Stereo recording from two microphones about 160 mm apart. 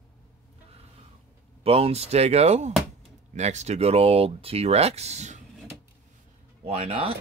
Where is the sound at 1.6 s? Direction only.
40° right (ahead or behind).